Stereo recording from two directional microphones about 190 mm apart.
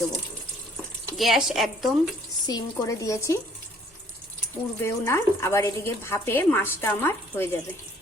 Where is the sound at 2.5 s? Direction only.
20° left (ahead or behind).